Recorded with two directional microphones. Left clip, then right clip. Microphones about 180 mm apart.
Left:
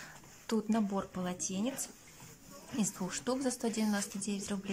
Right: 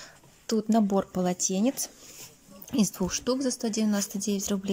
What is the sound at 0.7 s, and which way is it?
Speech, 25° right (ahead or behind).